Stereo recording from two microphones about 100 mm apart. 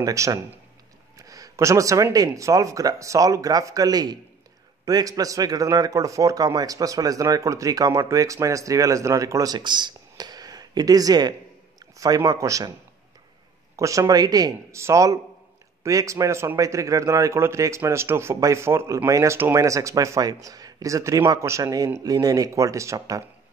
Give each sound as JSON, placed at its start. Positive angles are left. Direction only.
{"t": 0.0, "sound": "a man's voice", "side_deg": -35}
{"t": 1.1, "sound": "a sound", "side_deg": -35}
{"t": 2.1, "sound": "a man's voice", "side_deg": -35}
{"t": 11.8, "sound": "a sound", "side_deg": -40}
{"t": 12.2, "sound": "a man's voice", "side_deg": -30}
{"t": 13.7, "sound": "a man's voice", "side_deg": -35}